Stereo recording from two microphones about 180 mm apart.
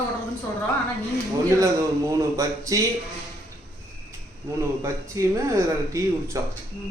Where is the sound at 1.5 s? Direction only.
15° right (ahead or behind).